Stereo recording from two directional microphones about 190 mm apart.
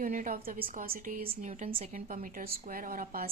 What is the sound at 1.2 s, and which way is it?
Speech, 35° right (ahead or behind).